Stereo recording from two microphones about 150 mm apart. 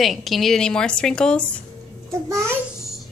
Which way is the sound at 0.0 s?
Centre (ahead or behind).